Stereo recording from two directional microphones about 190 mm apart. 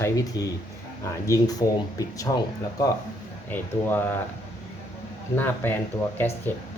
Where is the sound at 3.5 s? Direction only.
10° left (ahead or behind).